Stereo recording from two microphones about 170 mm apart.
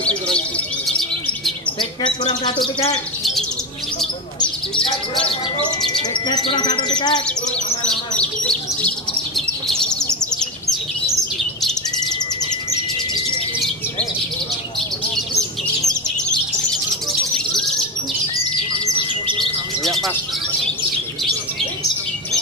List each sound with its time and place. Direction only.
0.8 s chirp: centre (ahead or behind)
1.8 s speech: 30° left (ahead or behind)
4.4 s bird: 30° left (ahead or behind)
5.8 s speech: 25° left (ahead or behind)
7.8 s bird: 5° left (ahead or behind)
19.8 s chirp: centre (ahead or behind)